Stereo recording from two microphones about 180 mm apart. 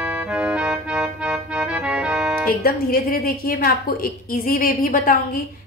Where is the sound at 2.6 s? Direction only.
55° left (ahead or behind).